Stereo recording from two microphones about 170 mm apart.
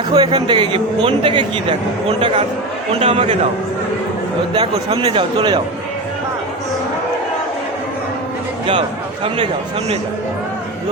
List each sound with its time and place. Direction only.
0.1 s speech: 30° right (ahead or behind)
4.5 s speech: 35° right (ahead or behind)